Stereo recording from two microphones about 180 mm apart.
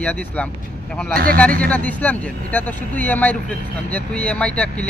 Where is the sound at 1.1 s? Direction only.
55° right (ahead or behind).